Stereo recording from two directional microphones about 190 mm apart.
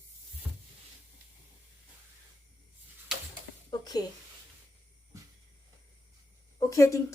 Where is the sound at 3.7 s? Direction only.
20° left (ahead or behind).